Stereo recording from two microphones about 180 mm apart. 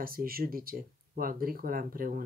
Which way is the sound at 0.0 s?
55° right (ahead or behind).